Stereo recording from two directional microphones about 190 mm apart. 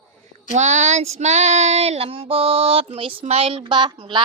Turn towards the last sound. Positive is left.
turn(degrees=-25)  # may be behind; listen again after turning